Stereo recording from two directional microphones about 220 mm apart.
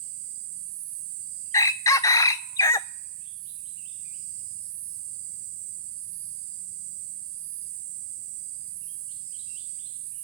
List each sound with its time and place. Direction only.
1.5 s chicken: 15° left (ahead or behind)